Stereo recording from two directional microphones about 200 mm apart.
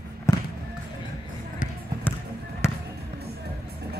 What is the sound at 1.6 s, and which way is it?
Basketball bounce, 40° left (ahead or behind).